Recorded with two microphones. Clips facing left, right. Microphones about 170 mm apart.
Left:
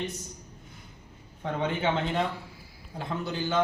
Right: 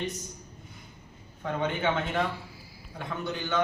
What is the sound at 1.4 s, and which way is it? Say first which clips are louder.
Speech: even; 25° left (ahead or behind).